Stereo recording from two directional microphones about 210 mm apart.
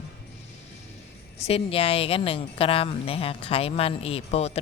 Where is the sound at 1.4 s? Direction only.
25° left (ahead or behind).